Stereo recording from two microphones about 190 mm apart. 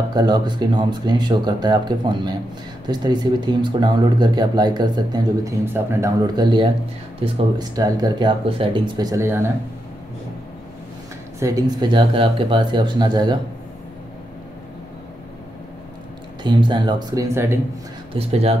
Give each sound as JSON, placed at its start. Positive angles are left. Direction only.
{"t": 0.1, "sound": "speech", "side_deg": -20}
{"t": 11.3, "sound": "speech", "side_deg": -15}
{"t": 16.4, "sound": "speech", "side_deg": -25}
{"t": 18.1, "sound": "speech", "side_deg": -35}